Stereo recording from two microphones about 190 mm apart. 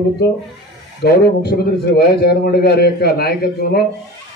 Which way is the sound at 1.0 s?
55° left (ahead or behind).